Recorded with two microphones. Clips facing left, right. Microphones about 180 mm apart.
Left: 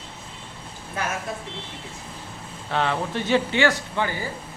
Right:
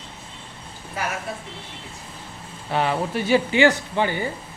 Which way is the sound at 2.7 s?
10° right (ahead or behind).